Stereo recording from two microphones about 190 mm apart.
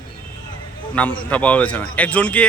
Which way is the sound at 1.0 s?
5° left (ahead or behind).